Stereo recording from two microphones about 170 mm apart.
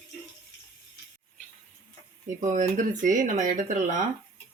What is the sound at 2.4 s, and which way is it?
Speech, 45° right (ahead or behind).